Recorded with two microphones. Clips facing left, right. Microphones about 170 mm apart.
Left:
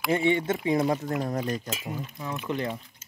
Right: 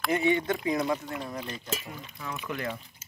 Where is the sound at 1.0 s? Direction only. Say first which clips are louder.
Left 7 dB; 45° left (ahead or behind).